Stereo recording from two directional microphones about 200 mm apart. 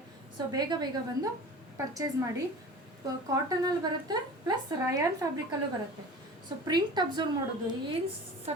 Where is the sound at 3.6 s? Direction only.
20° right (ahead or behind).